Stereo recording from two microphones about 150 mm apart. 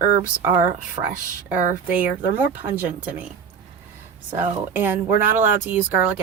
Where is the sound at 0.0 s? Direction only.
15° right (ahead or behind).